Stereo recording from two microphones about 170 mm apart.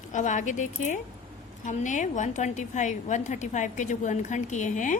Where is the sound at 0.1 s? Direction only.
45° left (ahead or behind).